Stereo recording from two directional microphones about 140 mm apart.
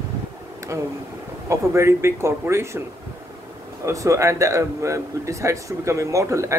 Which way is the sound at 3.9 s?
20° right (ahead or behind).